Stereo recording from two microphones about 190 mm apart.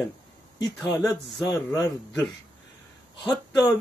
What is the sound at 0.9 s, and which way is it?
Speech, centre (ahead or behind).